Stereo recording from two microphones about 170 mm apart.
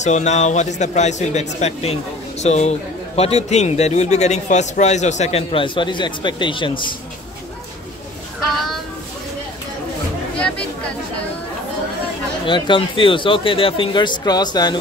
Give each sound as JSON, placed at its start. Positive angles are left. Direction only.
{"t": 0.0, "sound": "a man's voice", "side_deg": 45}
{"t": 12.4, "sound": "speech", "side_deg": 30}